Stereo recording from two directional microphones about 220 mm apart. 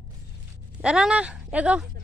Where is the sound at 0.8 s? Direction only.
5° right (ahead or behind).